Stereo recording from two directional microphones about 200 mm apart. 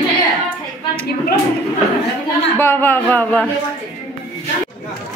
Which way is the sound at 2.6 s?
10° left (ahead or behind).